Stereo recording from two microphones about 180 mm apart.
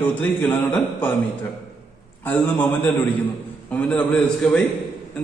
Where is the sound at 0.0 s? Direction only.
10° left (ahead or behind).